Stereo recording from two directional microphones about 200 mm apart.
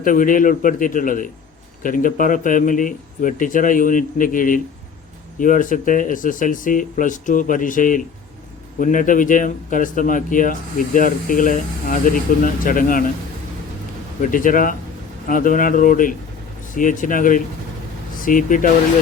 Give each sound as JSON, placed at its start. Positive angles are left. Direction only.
{"t": 0.0, "sound": "a man's voice", "side_deg": 40}
{"t": 14.2, "sound": "a man's voice", "side_deg": 40}